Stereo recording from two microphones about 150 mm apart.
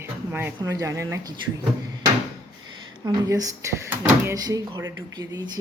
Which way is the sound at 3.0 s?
25° right (ahead or behind).